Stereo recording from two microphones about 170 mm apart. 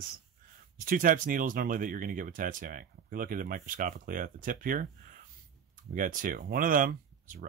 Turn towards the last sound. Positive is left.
turn(degrees=-55)  # may be behind; listen again after turning